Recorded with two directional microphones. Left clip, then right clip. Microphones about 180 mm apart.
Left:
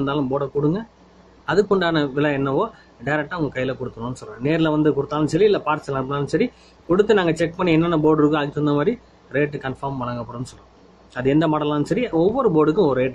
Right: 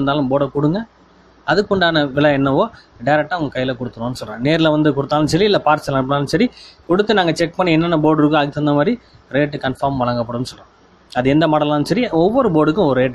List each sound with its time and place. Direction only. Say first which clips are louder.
0.0 s speech: right 6 dB; 40° right (ahead or behind)